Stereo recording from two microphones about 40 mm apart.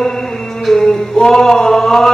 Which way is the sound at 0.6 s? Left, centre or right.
Centre.